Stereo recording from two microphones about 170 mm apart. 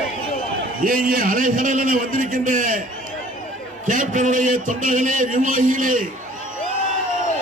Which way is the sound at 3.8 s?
50° right (ahead or behind).